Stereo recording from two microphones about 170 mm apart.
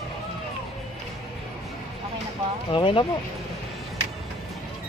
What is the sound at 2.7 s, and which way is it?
Speech, 30° left (ahead or behind).